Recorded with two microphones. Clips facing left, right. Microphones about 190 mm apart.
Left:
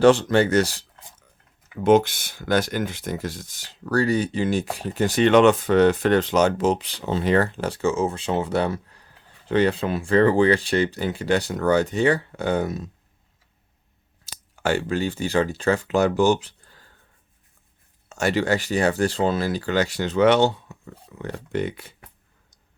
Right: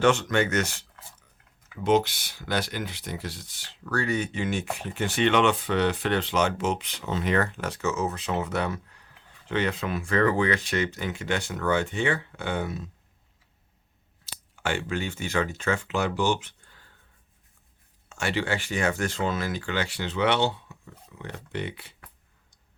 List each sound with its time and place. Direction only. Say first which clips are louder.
0.0 s speech: left 6 dB; 35° left (ahead or behind)
1.8 s speech: left 6 dB; 50° left (ahead or behind)
14.5 s speech: left 6 dB; 40° left (ahead or behind)
18.1 s speech: left 6 dB; 40° left (ahead or behind)